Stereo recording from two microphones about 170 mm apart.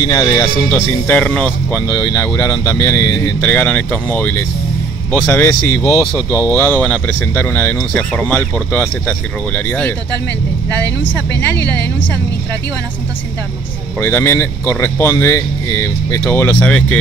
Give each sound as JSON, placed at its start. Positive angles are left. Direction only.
{"t": 0.0, "sound": "speech", "side_deg": 20}
{"t": 0.7, "sound": "speech", "side_deg": 10}
{"t": 14.0, "sound": "speech", "side_deg": 15}